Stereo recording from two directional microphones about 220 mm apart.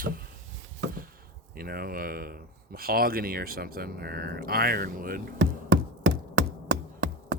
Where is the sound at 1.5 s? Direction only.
40° right (ahead or behind).